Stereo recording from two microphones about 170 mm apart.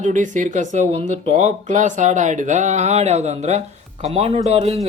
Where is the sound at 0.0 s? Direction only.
45° right (ahead or behind).